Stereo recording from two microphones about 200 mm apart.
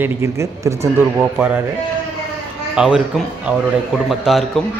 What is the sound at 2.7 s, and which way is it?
Speech, 5° right (ahead or behind).